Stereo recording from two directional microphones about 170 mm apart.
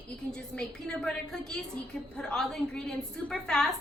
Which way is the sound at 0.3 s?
5° left (ahead or behind).